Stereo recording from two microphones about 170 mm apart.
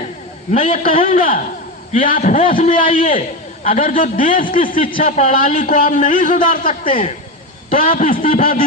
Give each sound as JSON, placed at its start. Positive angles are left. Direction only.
{"t": 0.8, "sound": "a man's voice", "side_deg": 50}